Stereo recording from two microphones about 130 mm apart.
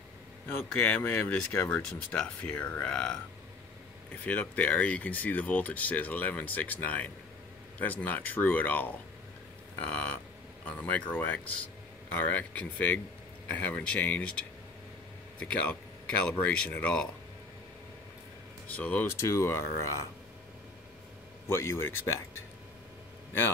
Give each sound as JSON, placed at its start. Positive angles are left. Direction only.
{"t": 0.5, "sound": "speech", "side_deg": 15}
{"t": 18.7, "sound": "speech", "side_deg": 10}
{"t": 21.5, "sound": "speech", "side_deg": 20}